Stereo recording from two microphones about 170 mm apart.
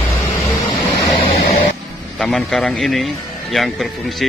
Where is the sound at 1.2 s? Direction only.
35° left (ahead or behind).